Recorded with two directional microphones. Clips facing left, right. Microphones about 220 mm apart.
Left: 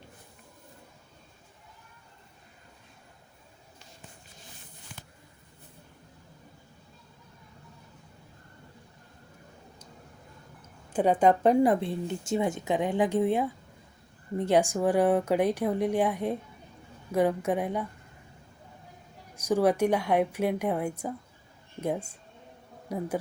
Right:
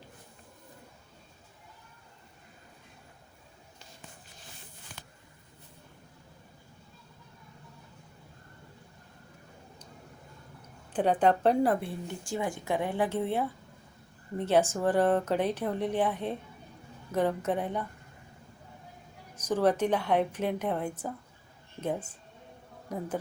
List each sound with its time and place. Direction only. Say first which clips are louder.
10.9 s speech: left 3 dB; 10° left (ahead or behind)
19.4 s speech: left 2 dB; 10° left (ahead or behind)